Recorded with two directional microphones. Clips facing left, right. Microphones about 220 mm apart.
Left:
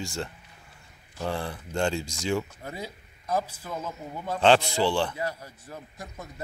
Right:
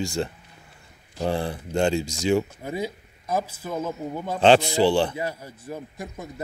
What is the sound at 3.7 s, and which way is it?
A man's voice, 20° right (ahead or behind).